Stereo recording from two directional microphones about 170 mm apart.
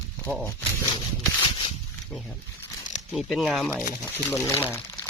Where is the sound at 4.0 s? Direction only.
10° left (ahead or behind).